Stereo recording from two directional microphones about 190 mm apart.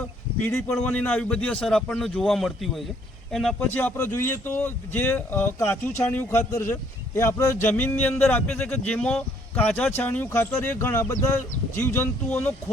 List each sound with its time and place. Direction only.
0.3 s a man's voice: 10° left (ahead or behind)